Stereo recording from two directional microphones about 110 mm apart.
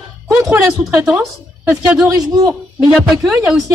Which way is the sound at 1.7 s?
25° right (ahead or behind).